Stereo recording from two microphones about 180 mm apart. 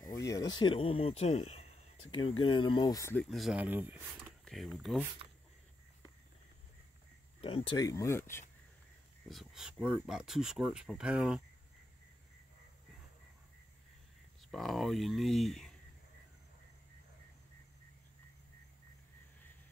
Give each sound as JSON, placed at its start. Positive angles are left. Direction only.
{"t": 0.0, "sound": "speech", "side_deg": 20}
{"t": 3.3, "sound": "speech", "side_deg": 0}
{"t": 4.5, "sound": "speech", "side_deg": 0}
{"t": 7.4, "sound": "speech", "side_deg": 30}
{"t": 9.3, "sound": "speech", "side_deg": 0}
{"t": 14.5, "sound": "speech", "side_deg": 0}